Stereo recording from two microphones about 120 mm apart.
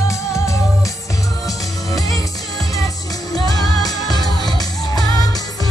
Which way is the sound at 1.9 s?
30° left (ahead or behind).